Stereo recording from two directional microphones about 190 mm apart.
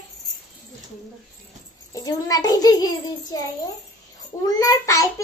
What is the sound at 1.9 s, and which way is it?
A child's voice, 20° left (ahead or behind).